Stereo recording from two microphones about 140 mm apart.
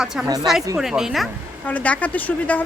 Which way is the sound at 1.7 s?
10° left (ahead or behind).